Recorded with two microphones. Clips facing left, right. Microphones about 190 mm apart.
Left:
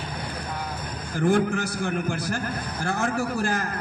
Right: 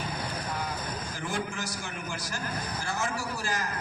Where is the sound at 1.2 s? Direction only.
55° left (ahead or behind).